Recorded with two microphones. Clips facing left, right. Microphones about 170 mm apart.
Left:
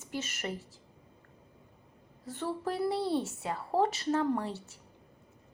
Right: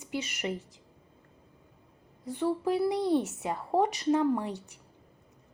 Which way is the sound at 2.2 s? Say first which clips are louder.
Right 6 dB; 15° right (ahead or behind).